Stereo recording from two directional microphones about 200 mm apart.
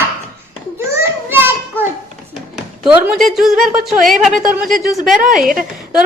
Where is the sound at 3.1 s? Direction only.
Centre (ahead or behind).